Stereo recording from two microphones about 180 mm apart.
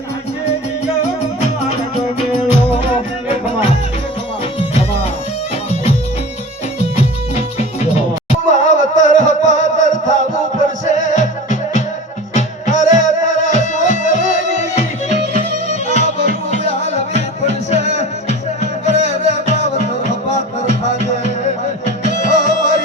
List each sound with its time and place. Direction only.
4.7 s music: 35° left (ahead or behind)
8.3 s music: 45° left (ahead or behind)
12.3 s music: 45° left (ahead or behind)